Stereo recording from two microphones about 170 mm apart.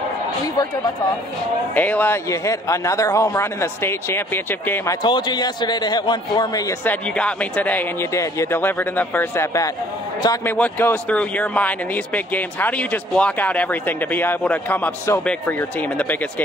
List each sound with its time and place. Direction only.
1.8 s speech: 10° left (ahead or behind)
5.0 s a man's voice: 25° left (ahead or behind)
6.8 s speech: 10° left (ahead or behind)